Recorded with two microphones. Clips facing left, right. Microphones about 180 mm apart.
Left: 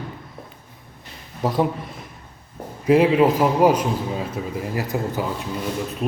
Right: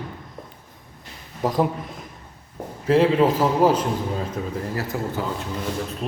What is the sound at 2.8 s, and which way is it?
A man's voice, 10° left (ahead or behind).